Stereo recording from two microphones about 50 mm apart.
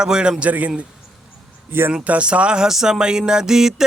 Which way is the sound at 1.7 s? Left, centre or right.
Right.